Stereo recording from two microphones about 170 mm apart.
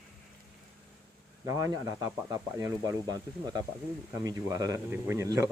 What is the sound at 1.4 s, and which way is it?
Speech, 20° right (ahead or behind).